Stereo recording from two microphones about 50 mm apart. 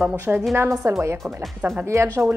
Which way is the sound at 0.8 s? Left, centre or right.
Right.